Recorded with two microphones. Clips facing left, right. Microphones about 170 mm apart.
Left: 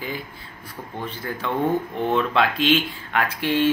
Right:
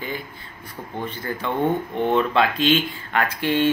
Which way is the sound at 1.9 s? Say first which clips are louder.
Right 2 dB; centre (ahead or behind).